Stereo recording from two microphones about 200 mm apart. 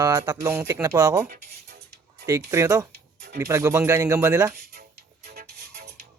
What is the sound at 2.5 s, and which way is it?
Speech, 15° right (ahead or behind).